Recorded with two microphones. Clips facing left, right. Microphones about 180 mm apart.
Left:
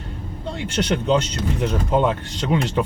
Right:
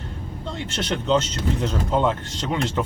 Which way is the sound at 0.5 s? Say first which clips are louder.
Left 5 dB; 15° left (ahead or behind).